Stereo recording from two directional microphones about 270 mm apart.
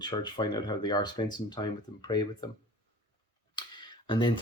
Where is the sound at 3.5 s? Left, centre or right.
Centre.